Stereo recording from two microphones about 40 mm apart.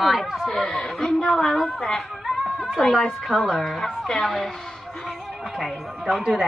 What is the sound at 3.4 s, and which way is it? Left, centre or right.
Speech, centre.